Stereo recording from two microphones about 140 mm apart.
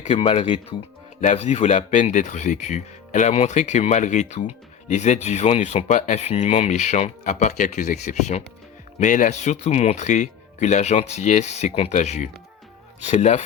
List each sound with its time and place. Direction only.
0.0 s speech: 40° left (ahead or behind)
1.2 s speech: 60° left (ahead or behind)
9.0 s speech: 65° left (ahead or behind)